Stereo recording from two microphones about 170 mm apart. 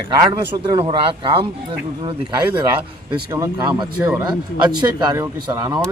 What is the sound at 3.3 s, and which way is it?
A man's voice, 20° right (ahead or behind).